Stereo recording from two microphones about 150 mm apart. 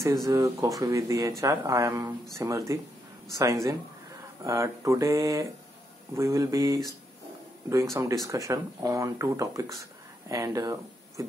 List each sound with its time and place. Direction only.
0.0 s speech: 20° right (ahead or behind)
7.9 s speech: 20° right (ahead or behind)